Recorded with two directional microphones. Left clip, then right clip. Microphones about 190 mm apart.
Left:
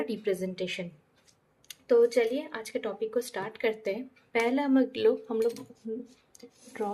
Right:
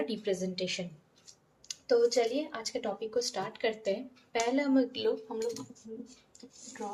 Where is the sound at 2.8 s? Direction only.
40° left (ahead or behind).